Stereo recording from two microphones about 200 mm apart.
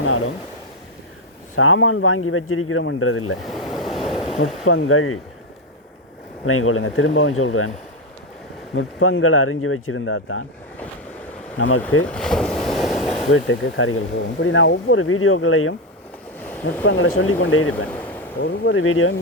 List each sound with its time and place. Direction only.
1.5 s speech: 90° left
3.4 s train: centre (ahead or behind)
4.4 s speech: 90° left
6.4 s speech: 90° left
8.7 s speech: 90° left
11.5 s speech: 85° left
12.0 s boat: 5° left (ahead or behind)
13.3 s speech: 85° left
14.4 s speech: 75° left (ahead or behind)
16.4 s a sound: 10° left (ahead or behind)
16.8 s speech: 90° left
17.8 s a sound: 10° left (ahead or behind)
18.3 s speech: 60° left (ahead or behind); by 19.1 s 80° left